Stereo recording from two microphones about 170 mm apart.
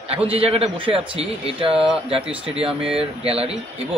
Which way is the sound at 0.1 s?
35° right (ahead or behind).